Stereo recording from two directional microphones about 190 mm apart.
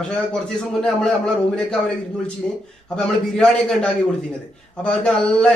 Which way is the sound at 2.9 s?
5° left (ahead or behind).